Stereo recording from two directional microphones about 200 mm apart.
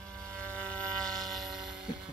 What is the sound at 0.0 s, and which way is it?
Vehicle, 5° left (ahead or behind).